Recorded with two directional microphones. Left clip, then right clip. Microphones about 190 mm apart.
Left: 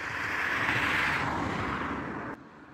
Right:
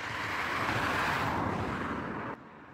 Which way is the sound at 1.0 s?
20° right (ahead or behind).